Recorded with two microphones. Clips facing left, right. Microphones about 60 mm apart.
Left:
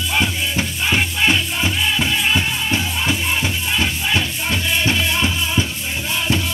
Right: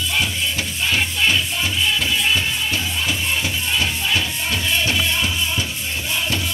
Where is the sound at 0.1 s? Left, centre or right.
Centre.